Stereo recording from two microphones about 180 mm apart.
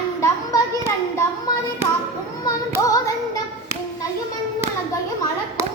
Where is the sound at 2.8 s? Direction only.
20° left (ahead or behind).